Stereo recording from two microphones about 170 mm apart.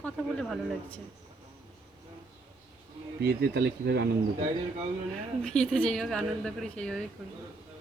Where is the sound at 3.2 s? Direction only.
75° right (ahead or behind).